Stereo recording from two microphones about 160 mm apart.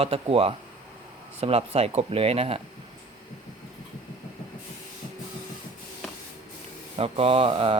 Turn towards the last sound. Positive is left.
turn(degrees=-35)  # may be behind; listen again after turning